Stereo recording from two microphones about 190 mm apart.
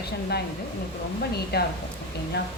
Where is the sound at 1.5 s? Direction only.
55° left (ahead or behind).